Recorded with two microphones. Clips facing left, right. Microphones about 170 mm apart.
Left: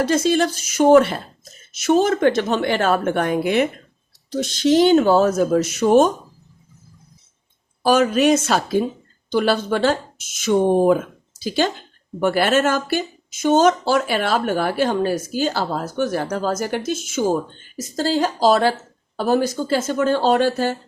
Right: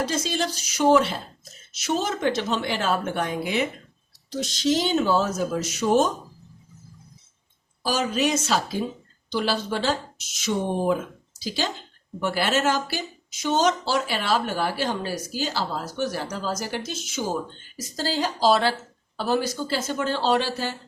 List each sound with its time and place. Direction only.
0.0 s a woman's voice: 55° left (ahead or behind)
7.8 s a woman's voice: 55° left (ahead or behind)